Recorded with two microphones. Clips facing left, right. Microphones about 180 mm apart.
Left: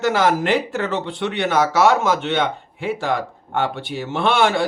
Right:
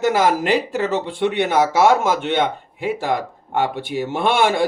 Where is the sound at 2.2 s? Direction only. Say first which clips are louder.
Right 1 dB; 55° right (ahead or behind).